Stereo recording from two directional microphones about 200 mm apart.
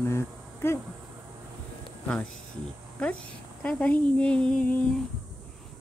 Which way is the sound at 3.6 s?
5° left (ahead or behind).